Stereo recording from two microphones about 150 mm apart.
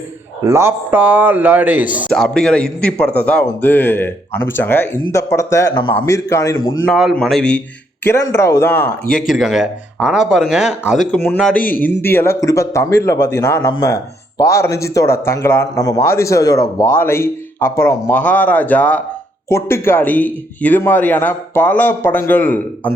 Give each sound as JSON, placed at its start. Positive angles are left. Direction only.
{"t": 0.4, "sound": "a man's voice", "side_deg": -15}
{"t": 2.0, "sound": "speech", "side_deg": 5}
{"t": 6.8, "sound": "speech", "side_deg": 0}
{"t": 8.0, "sound": "speech", "side_deg": 15}
{"t": 11.1, "sound": "speech", "side_deg": 10}